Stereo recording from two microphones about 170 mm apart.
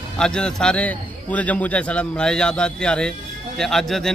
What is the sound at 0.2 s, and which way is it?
A man's voice, 5° left (ahead or behind).